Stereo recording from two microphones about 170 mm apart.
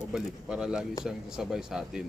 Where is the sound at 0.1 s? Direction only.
5° right (ahead or behind).